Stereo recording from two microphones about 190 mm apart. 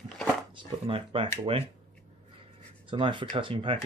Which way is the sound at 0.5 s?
30° right (ahead or behind).